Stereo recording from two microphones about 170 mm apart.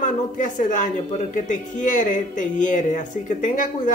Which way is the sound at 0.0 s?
45° left (ahead or behind).